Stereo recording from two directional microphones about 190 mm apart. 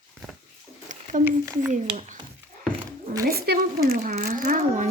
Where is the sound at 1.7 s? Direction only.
40° right (ahead or behind).